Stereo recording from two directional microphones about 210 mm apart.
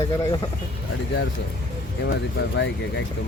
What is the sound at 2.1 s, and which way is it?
Speech, 55° left (ahead or behind).